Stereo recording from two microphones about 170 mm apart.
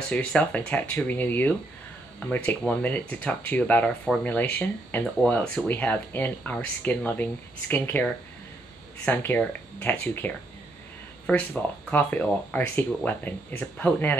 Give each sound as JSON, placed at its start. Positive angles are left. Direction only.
{"t": 0.1, "sound": "speech", "side_deg": 5}
{"t": 2.8, "sound": "speech", "side_deg": 10}